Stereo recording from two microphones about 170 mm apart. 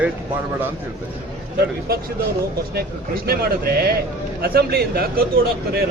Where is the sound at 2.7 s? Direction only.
65° right (ahead or behind).